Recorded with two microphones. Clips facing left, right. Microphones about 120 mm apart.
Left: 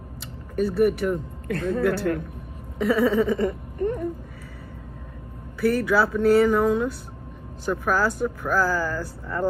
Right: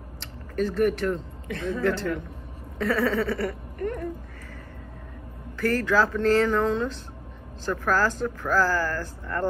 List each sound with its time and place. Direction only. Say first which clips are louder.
0.6 s speech: left 3 dB; 10° left (ahead or behind)
1.5 s speech: left 4 dB; 55° left (ahead or behind)
1.8 s speech: left 2 dB; 5° left (ahead or behind)
5.6 s speech: left 2 dB; 10° left (ahead or behind)